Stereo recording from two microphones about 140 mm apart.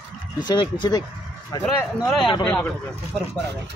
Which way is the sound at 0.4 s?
30° left (ahead or behind).